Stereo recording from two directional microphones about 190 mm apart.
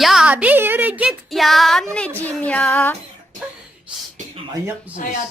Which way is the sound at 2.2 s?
10° left (ahead or behind).